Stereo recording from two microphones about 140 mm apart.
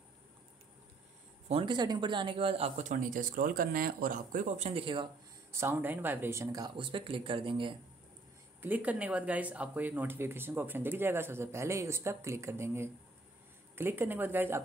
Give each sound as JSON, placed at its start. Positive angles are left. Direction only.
{"t": 1.5, "sound": "speech", "side_deg": -35}
{"t": 2.8, "sound": "speech", "side_deg": -65}
{"t": 5.5, "sound": "speech", "side_deg": -15}
{"t": 8.5, "sound": "speech", "side_deg": -10}